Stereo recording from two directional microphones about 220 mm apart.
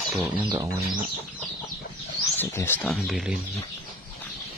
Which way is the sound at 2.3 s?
10° left (ahead or behind).